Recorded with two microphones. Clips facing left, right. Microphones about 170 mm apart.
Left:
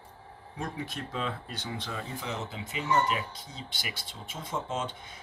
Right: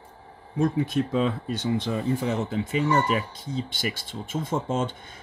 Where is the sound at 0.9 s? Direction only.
45° right (ahead or behind).